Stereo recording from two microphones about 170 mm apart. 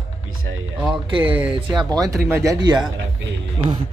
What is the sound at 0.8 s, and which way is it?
Speech, 30° right (ahead or behind).